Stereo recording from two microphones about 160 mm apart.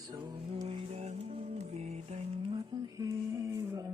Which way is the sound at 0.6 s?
40° right (ahead or behind).